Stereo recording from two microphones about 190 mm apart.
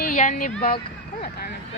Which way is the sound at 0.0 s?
45° left (ahead or behind).